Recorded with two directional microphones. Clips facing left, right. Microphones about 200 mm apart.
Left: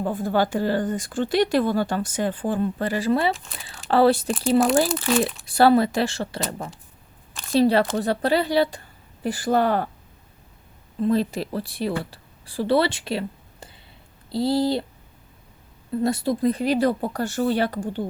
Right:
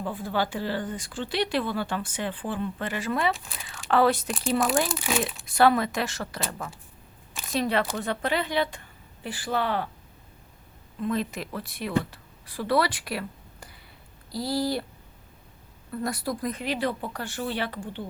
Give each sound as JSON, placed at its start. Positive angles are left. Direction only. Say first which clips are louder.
{"t": 0.0, "sound": "speech", "louder": "left 6 dB", "side_deg": 45}
{"t": 4.9, "sound": "speech", "louder": "left 6 dB", "side_deg": -5}
{"t": 5.5, "sound": "speech", "louder": "left 4 dB", "side_deg": 35}
{"t": 7.5, "sound": "speech", "louder": "left 8 dB", "side_deg": 35}
{"t": 11.0, "sound": "speech", "louder": "left 7 dB", "side_deg": 35}
{"t": 15.9, "sound": "speech", "louder": "left 7 dB", "side_deg": 25}